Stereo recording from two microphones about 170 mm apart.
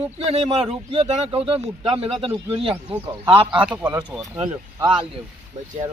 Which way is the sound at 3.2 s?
30° right (ahead or behind).